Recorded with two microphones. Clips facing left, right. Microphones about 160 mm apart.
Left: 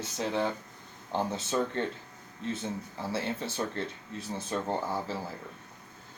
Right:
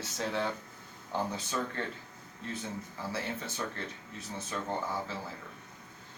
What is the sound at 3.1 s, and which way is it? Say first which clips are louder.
Speech: left 5 dB; 30° left (ahead or behind).